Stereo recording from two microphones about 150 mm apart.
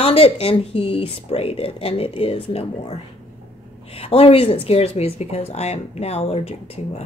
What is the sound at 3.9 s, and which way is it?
Speech, 40° left (ahead or behind).